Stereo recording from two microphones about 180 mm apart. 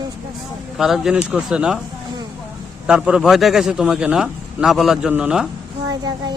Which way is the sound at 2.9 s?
5° right (ahead or behind).